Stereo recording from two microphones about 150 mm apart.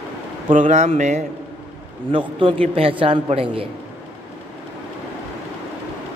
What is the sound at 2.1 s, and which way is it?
A man's voice, 35° right (ahead or behind).